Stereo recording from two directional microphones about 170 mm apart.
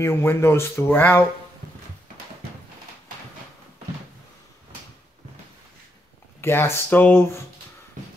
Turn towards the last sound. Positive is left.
turn(degrees=15)  # may be behind; listen again after turning